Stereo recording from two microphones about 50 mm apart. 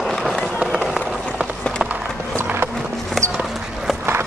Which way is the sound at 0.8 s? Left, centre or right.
Centre.